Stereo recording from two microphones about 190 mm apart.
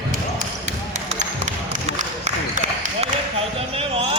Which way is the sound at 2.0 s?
40° right (ahead or behind).